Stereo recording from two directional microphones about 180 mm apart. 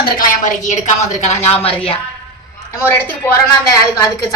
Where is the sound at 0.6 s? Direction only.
40° left (ahead or behind).